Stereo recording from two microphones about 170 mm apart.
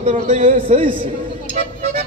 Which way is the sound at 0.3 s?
45° right (ahead or behind).